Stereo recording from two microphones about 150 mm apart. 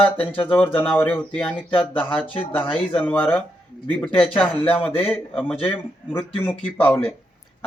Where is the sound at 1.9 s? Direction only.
35° left (ahead or behind).